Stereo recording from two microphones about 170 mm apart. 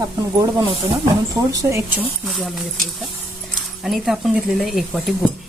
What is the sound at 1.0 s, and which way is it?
Speech, 20° right (ahead or behind).